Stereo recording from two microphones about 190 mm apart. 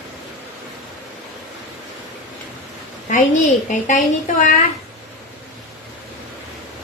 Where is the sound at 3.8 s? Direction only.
40° left (ahead or behind).